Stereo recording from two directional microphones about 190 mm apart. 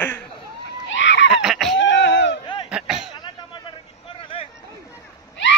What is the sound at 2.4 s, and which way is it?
Cough, 25° left (ahead or behind).